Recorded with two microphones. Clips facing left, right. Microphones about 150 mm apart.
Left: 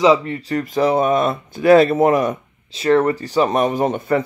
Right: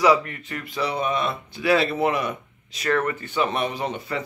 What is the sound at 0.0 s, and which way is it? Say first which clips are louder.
Speech: left 5 dB; 25° left (ahead or behind).